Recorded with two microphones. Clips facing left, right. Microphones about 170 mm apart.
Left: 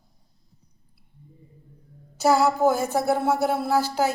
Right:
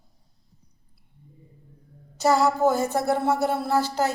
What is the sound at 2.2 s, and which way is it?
Speech, 5° left (ahead or behind).